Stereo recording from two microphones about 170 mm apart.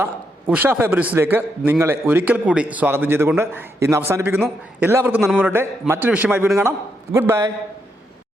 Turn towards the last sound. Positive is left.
turn(degrees=-15)  # may be behind; listen again after turning